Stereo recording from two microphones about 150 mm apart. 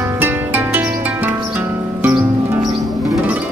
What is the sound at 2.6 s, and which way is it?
Music, 25° right (ahead or behind).